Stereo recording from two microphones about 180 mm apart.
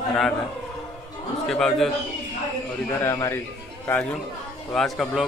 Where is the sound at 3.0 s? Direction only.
15° left (ahead or behind).